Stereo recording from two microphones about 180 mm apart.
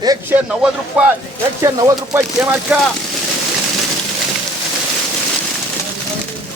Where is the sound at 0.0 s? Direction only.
20° right (ahead or behind).